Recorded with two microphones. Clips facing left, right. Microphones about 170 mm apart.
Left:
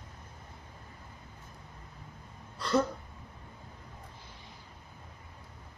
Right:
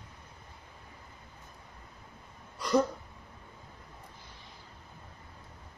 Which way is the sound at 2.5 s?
15° right (ahead or behind).